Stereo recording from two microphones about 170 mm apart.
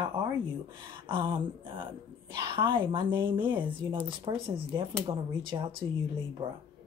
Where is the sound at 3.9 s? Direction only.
30° right (ahead or behind).